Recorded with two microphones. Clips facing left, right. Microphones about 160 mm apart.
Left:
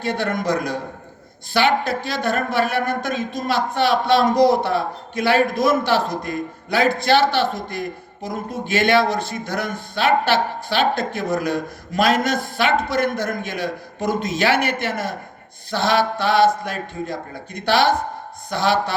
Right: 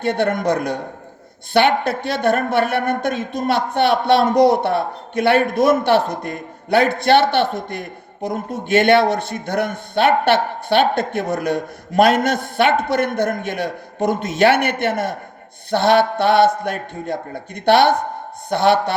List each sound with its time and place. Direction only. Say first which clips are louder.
0.0 s speech: right 4 dB; 60° right (ahead or behind)